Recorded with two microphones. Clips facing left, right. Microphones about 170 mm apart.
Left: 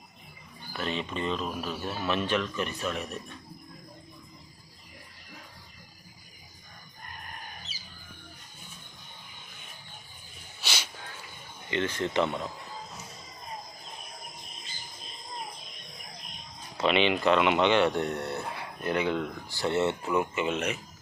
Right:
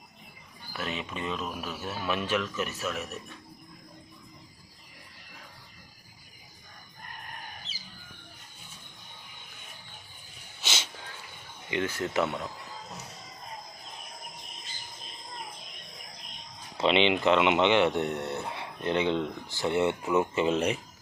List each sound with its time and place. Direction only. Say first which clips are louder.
0.7 s speech: left 3 dB; 5° right (ahead or behind)
7.7 s squawk: even; 5° left (ahead or behind)
10.6 s wheeze: even; 20° right (ahead or behind)
11.7 s speech: left 1 dB; 10° right (ahead or behind)
16.7 s speech: right 1 dB; 25° right (ahead or behind)
20.3 s speech: right 4 dB; 35° right (ahead or behind)